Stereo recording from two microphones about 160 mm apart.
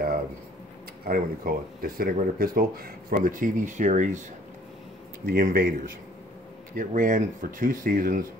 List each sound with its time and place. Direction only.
1.0 s speech: 65° right (ahead or behind)
5.2 s speech: 65° right (ahead or behind)